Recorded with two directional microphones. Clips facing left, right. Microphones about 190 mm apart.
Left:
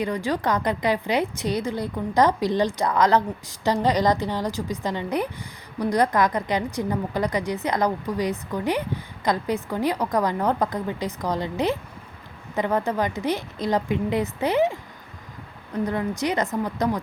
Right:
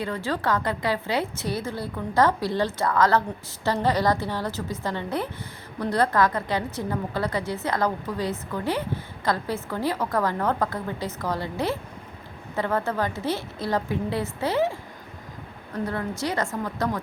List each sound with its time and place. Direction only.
0.0 s a woman's voice: 15° left (ahead or behind)